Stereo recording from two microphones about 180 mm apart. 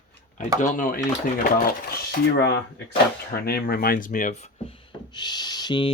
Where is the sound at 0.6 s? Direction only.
45° left (ahead or behind).